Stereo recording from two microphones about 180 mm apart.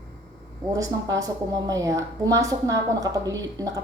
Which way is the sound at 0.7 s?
20° right (ahead or behind).